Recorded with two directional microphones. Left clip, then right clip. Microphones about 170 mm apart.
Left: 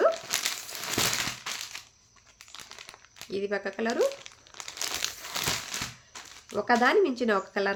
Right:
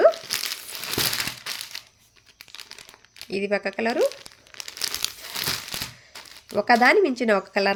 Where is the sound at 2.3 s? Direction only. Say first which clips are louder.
Right 4 dB; 10° right (ahead or behind).